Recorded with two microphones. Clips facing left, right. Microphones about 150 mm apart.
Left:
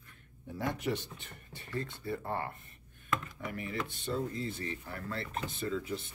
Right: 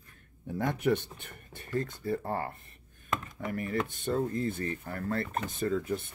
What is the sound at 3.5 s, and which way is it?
Speech, 45° right (ahead or behind).